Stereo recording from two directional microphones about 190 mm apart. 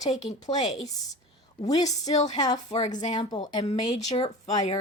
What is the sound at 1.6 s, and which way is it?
Speech, 20° left (ahead or behind).